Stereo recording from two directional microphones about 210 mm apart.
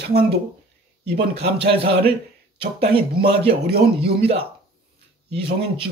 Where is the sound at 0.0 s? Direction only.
45° right (ahead or behind).